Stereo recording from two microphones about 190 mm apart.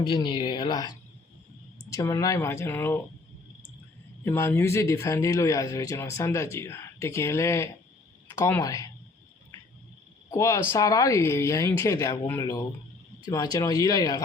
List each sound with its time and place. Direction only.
0.0 s speech: 25° left (ahead or behind)
4.2 s speech: 15° left (ahead or behind)
10.2 s speech: 15° left (ahead or behind)